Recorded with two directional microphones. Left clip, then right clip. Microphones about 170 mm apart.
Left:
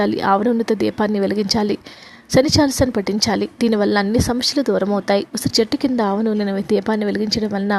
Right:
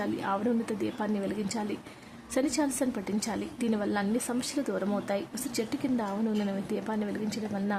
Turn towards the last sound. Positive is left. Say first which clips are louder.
# left 13 dB
turn(degrees=45)  # may be behind; listen again after turning